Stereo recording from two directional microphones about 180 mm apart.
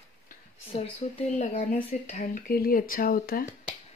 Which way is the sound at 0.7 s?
35° left (ahead or behind).